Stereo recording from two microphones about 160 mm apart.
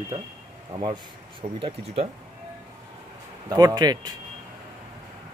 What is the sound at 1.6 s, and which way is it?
Speech, 40° right (ahead or behind).